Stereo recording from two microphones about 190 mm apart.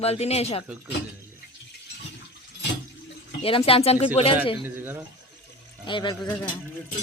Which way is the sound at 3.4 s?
30° left (ahead or behind).